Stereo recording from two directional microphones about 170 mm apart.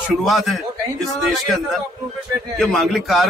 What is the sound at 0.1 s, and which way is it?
A man's voice, centre (ahead or behind).